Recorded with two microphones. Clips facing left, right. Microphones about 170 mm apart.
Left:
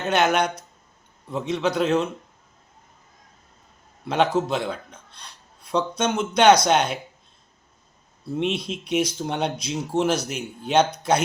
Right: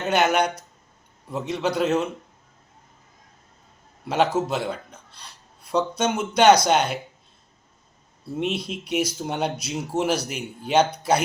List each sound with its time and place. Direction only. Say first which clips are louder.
0.0 s speech: even; 10° right (ahead or behind)
4.0 s a man's voice: even; 5° right (ahead or behind)
8.4 s speech: left 1 dB; 5° right (ahead or behind)